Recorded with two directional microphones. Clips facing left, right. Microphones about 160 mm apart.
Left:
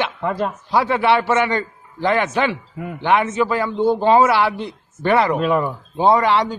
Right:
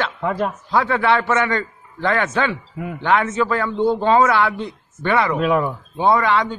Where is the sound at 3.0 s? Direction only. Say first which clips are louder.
Left 1 dB; 15° left (ahead or behind).